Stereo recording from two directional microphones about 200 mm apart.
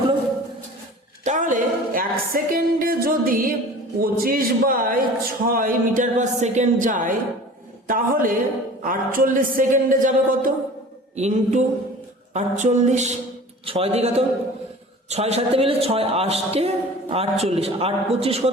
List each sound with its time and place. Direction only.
1.2 s music: 40° right (ahead or behind)
4.0 s a man's voice: 45° right (ahead or behind); by 18.5 s 30° right (ahead or behind)